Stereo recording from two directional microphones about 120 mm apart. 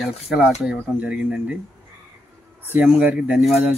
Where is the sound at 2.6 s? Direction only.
15° right (ahead or behind).